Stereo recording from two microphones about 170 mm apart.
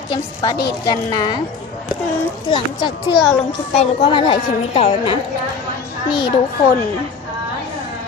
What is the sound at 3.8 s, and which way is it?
A woman's voice, 30° left (ahead or behind).